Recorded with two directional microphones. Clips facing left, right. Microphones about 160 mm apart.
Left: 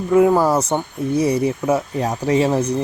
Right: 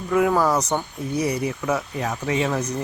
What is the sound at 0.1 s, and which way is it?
Speech, 25° left (ahead or behind).